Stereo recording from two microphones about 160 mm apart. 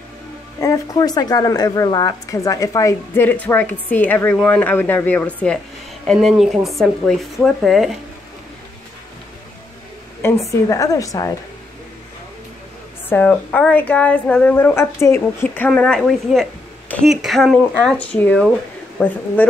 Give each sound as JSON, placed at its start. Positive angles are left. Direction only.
{"t": 0.6, "sound": "speech", "side_deg": 20}
{"t": 10.2, "sound": "a woman's voice", "side_deg": 15}
{"t": 13.1, "sound": "speech", "side_deg": 10}